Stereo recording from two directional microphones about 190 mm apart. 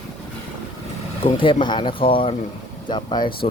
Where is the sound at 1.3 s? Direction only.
25° left (ahead or behind).